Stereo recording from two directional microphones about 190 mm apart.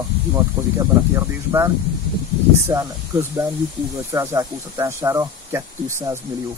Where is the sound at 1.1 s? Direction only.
15° right (ahead or behind).